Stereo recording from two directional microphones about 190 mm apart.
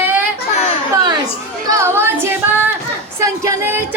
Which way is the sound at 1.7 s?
15° right (ahead or behind).